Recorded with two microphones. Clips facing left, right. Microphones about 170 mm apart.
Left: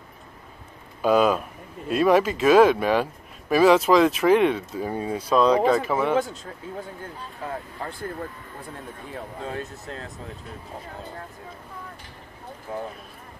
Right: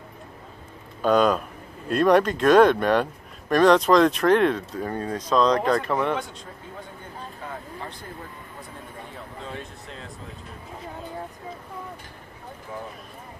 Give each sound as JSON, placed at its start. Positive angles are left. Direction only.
{"t": 1.0, "sound": "speech", "side_deg": 5}